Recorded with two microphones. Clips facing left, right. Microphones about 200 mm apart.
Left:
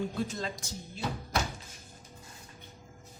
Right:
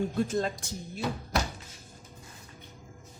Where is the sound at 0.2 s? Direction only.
50° right (ahead or behind).